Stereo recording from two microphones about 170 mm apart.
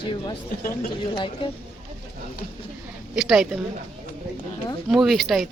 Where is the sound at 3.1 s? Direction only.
5° right (ahead or behind).